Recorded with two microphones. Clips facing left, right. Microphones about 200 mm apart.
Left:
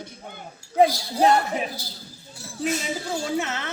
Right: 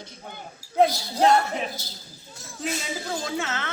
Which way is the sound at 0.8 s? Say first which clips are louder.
Left 1 dB; 10° left (ahead or behind).